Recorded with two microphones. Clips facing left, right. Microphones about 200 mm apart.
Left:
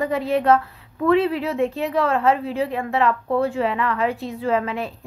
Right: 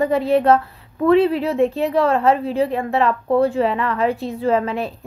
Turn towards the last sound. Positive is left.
turn(degrees=-30)  # may be behind; listen again after turning